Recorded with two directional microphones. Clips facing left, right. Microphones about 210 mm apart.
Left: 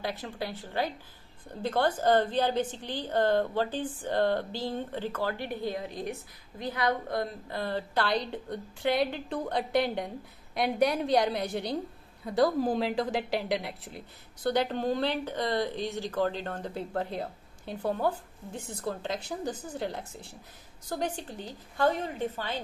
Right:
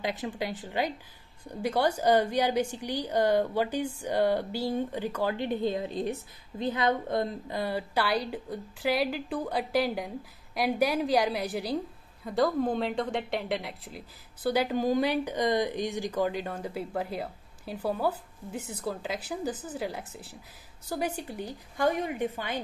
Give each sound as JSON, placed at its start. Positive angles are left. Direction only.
{"t": 0.0, "sound": "a woman's voice", "side_deg": -15}